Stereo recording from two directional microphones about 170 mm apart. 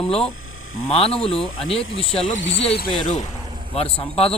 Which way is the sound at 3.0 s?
45° left (ahead or behind).